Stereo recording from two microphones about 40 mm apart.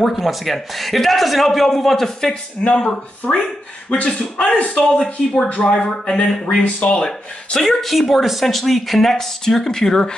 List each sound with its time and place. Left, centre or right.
0.0 s a man's voice: centre
2.8 s speech: centre
4.5 s speech: left
4.7 s speech: centre
6.4 s speech: left
7.0 s speech: centre
7.8 s a man's voice: centre